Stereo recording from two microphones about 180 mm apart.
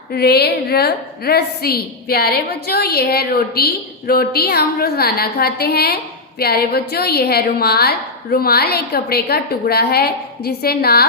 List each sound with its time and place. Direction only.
0.1 s a woman's voice: 60° left (ahead or behind)